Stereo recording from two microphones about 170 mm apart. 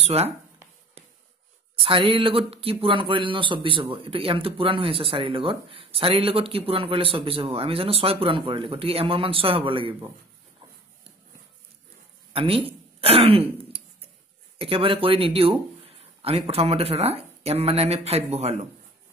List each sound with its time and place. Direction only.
0.0 s speech: 35° right (ahead or behind)
1.8 s speech: 35° right (ahead or behind)
12.3 s throat clearing: 35° right (ahead or behind)
14.6 s speech: 35° right (ahead or behind)